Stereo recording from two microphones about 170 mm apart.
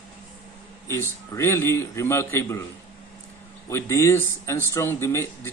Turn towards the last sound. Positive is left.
turn(degrees=15)  # may be behind; listen again after turning